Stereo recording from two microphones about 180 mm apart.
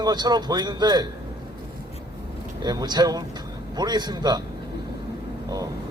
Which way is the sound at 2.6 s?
25° right (ahead or behind).